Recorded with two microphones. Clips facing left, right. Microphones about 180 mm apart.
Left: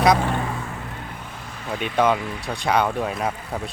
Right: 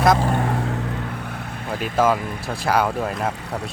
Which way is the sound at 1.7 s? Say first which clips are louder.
Right 1 dB; centre (ahead or behind).